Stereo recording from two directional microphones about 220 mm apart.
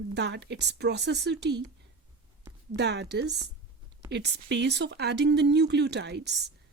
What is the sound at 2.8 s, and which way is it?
A woman's voice, 50° right (ahead or behind).